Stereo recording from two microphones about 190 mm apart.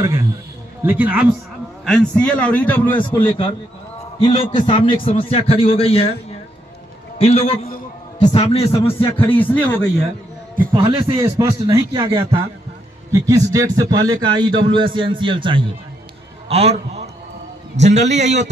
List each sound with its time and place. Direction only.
0.0 s speech: 15° right (ahead or behind)
1.9 s a man's voice: 5° left (ahead or behind)
3.0 s a man's voice: 25° left (ahead or behind)
7.2 s a man's voice: 30° left (ahead or behind)
9.4 s a man's voice: 10° left (ahead or behind)
10.8 s a man's voice: 30° right (ahead or behind)
12.0 s a man's voice: 30° right (ahead or behind)
13.1 s a man's voice: 20° right (ahead or behind)
16.4 s a sound: 30° right (ahead or behind)
17.7 s a man's voice: 35° right (ahead or behind)